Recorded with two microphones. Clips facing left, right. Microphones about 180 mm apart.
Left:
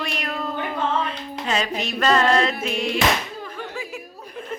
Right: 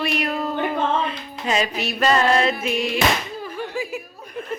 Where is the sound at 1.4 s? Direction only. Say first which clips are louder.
Right 2 dB; 10° right (ahead or behind).